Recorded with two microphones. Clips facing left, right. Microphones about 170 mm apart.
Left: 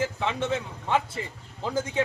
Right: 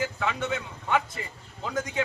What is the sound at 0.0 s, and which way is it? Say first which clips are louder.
A man's voice: left 2 dB; 30° left (ahead or behind).